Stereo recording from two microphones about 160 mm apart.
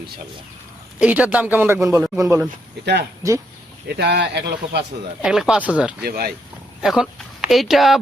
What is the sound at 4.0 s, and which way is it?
Speech, 90° right.